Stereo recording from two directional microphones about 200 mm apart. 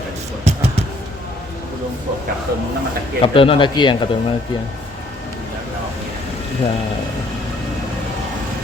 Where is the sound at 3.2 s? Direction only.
25° left (ahead or behind).